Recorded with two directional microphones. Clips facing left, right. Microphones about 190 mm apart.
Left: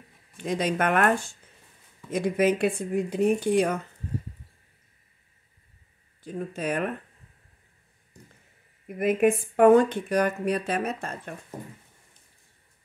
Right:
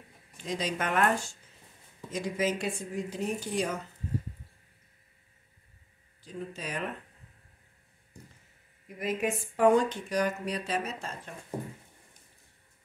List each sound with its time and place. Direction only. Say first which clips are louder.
0.4 s speech: left 7 dB; 60° left (ahead or behind)
6.2 s speech: left 8 dB; 55° left (ahead or behind)
8.8 s speech: left 9 dB; 55° left (ahead or behind)